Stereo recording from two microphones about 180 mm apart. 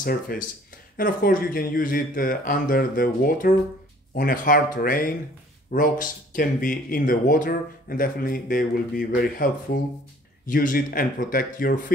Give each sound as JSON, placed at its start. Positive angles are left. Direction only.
{"t": 0.0, "sound": "speech", "side_deg": 55}